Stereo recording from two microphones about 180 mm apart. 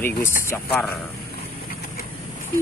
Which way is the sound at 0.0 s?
15° left (ahead or behind).